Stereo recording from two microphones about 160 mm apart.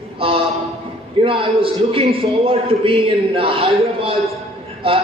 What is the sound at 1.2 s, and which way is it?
A man's voice, 35° right (ahead or behind).